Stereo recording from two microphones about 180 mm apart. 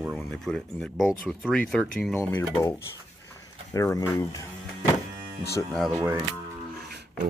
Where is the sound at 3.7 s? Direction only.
15° left (ahead or behind).